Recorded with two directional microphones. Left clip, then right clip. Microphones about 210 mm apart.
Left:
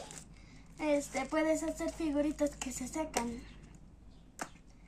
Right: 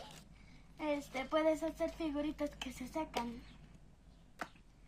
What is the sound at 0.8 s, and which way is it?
Speech, 20° right (ahead or behind).